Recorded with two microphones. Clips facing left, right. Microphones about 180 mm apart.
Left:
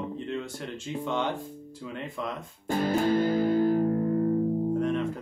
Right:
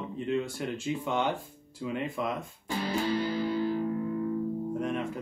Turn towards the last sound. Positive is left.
turn(degrees=-10)  # may be behind; listen again after turning